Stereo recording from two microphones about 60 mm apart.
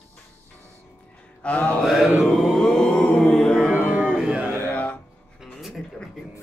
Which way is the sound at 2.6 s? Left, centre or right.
Centre.